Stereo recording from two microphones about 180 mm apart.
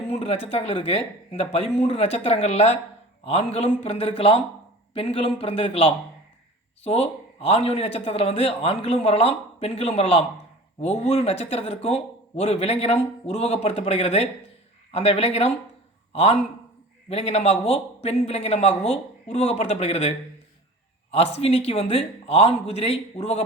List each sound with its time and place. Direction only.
0.1 s a man's voice: 35° left (ahead or behind)